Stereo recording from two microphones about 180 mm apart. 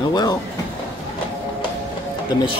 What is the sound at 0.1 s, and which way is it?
Train, 20° left (ahead or behind).